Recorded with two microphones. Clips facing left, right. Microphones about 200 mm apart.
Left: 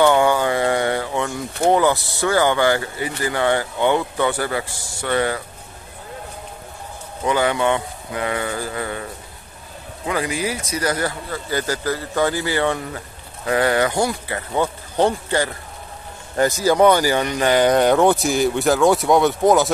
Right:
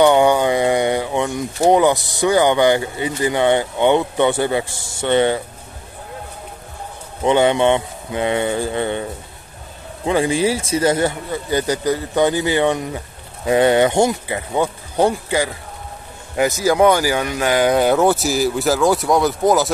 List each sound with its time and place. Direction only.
0.0 s speech: 20° right (ahead or behind)
7.2 s speech: 25° right (ahead or behind)
10.0 s speech: 25° right (ahead or behind); by 15.5 s 10° right (ahead or behind)
16.6 s speech: 10° right (ahead or behind)